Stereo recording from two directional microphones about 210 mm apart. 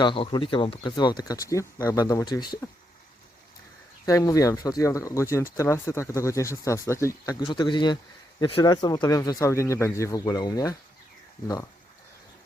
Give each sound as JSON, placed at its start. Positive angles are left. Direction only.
{"t": 0.0, "sound": "speech", "side_deg": 25}
{"t": 4.0, "sound": "speech", "side_deg": 15}